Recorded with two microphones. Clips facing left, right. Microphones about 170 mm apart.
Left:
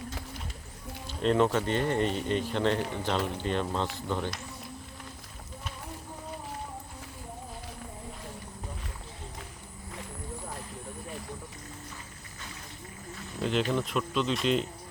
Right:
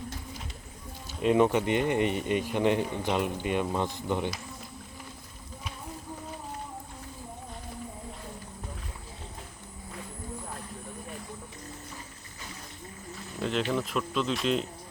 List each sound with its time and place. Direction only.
1.2 s speech: 10° right (ahead or behind)
13.4 s speech: centre (ahead or behind)